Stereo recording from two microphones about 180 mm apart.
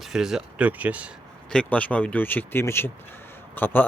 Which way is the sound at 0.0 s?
Centre (ahead or behind).